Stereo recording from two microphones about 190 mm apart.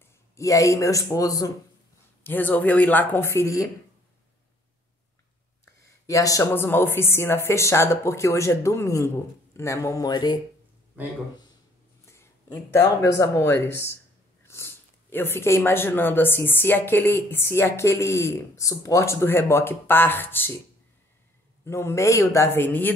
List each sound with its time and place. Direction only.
0.0 s speech: 15° left (ahead or behind)
5.8 s speech: 15° left (ahead or behind)
11.0 s speech: 10° right (ahead or behind)
12.1 s speech: 15° left (ahead or behind)
21.6 s speech: 15° left (ahead or behind)